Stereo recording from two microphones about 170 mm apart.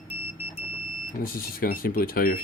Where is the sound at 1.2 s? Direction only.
60° left (ahead or behind).